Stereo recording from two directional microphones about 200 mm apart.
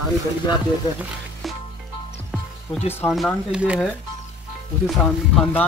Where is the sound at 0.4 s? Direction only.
20° left (ahead or behind).